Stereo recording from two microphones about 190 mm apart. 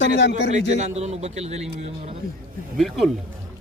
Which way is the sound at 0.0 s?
65° left (ahead or behind).